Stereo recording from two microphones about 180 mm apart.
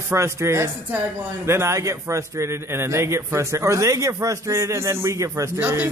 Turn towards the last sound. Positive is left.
turn(degrees=-10)  # may be behind; listen again after turning